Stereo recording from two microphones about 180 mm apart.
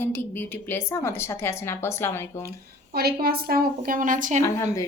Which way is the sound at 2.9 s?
60° right (ahead or behind).